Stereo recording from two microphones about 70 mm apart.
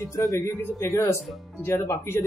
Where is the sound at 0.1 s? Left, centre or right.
Left.